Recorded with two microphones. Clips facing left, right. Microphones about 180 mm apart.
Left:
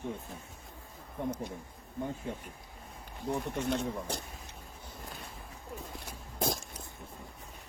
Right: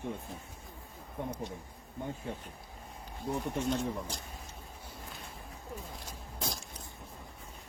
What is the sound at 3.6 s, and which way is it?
Speech, 60° left (ahead or behind).